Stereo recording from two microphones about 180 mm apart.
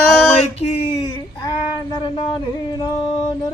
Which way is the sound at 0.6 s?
35° left (ahead or behind).